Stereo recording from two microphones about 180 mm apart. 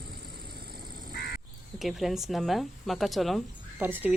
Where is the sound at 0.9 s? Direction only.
55° right (ahead or behind).